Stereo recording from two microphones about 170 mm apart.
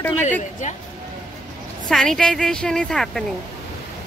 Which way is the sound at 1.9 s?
5° left (ahead or behind).